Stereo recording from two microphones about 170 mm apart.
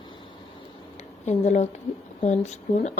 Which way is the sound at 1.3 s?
45° left (ahead or behind).